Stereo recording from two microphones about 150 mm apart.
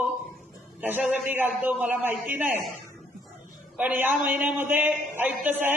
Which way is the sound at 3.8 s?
10° right (ahead or behind).